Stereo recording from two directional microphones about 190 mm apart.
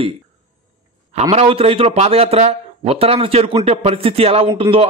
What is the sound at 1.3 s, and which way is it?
A man's voice, 30° right (ahead or behind).